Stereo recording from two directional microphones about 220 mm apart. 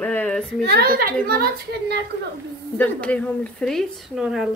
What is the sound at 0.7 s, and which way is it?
Speech, 45° right (ahead or behind).